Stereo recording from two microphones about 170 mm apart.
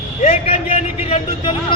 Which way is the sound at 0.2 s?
40° left (ahead or behind).